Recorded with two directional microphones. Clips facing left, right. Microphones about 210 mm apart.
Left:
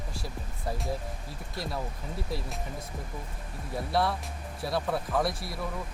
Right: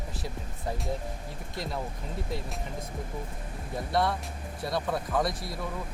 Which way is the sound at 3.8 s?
Centre (ahead or behind).